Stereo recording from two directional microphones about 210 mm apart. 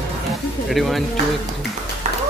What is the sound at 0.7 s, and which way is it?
Speech, centre (ahead or behind).